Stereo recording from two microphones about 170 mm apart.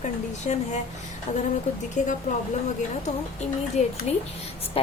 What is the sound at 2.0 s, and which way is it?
Speech, 45° left (ahead or behind).